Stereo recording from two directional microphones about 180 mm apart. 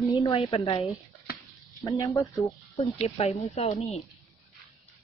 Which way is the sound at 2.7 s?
35° left (ahead or behind).